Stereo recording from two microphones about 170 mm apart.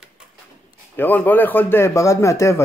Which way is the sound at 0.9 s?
10° left (ahead or behind).